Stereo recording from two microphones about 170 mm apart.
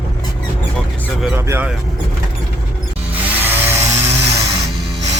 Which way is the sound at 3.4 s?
15° right (ahead or behind).